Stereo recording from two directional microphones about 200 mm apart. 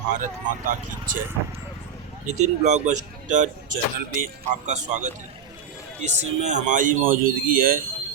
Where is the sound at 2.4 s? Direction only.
35° right (ahead or behind).